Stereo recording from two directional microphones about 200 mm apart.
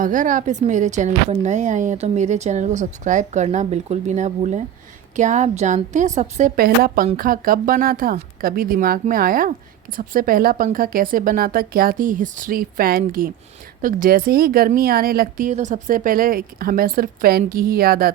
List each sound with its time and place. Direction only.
0.0 s speech: 40° right (ahead or behind)